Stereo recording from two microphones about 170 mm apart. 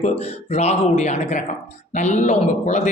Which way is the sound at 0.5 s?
40° left (ahead or behind).